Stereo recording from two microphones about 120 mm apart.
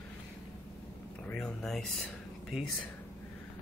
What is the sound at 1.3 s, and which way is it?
Speech, 5° left (ahead or behind).